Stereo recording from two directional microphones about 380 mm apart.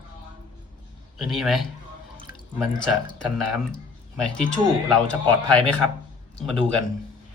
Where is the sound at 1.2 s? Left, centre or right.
Centre.